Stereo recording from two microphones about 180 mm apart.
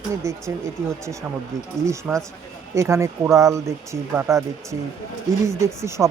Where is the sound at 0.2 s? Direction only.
15° right (ahead or behind).